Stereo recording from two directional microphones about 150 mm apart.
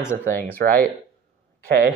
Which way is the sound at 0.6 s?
90° right.